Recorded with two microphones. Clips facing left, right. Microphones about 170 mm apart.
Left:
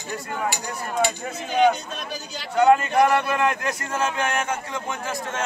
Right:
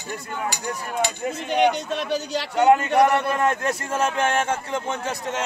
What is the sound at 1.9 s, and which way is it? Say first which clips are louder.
Speech: right 8 dB; 75° right (ahead or behind).